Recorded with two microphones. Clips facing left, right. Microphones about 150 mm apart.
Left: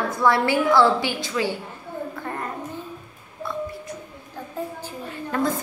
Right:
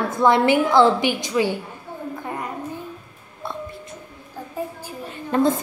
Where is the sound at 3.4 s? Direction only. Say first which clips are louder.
Left 2 dB; 25° right (ahead or behind).